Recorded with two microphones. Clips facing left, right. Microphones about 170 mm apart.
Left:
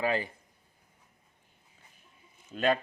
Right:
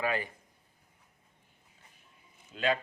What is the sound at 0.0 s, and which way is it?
Speech, 30° left (ahead or behind).